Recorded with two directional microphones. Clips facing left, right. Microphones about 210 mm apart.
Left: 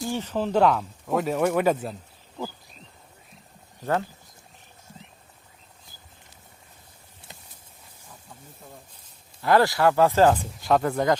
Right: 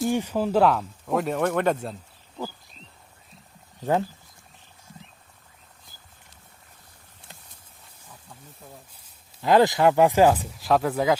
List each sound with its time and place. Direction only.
0.1 s speech: 10° right (ahead or behind)
3.8 s speech: 20° right (ahead or behind)
9.4 s speech: 20° right (ahead or behind)